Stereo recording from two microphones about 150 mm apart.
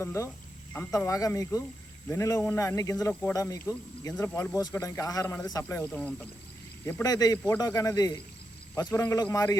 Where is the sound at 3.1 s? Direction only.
10° left (ahead or behind).